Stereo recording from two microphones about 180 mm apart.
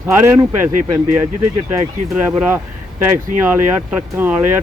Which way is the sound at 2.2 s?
10° right (ahead or behind).